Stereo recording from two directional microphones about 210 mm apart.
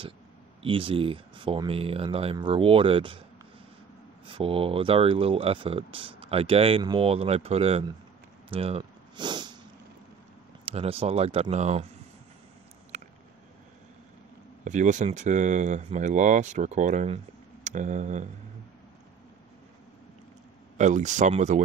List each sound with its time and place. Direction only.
0.6 s speech: 25° right (ahead or behind)
4.3 s speech: 25° right (ahead or behind)
8.5 s a sound: 30° right (ahead or behind)
10.6 s speech: 30° right (ahead or behind)
12.9 s a sound: 35° right (ahead or behind)
14.6 s speech: 35° right (ahead or behind)
20.7 s speech: 35° right (ahead or behind)